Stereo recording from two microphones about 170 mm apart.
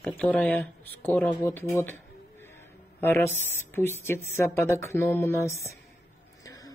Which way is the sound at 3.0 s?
10° left (ahead or behind).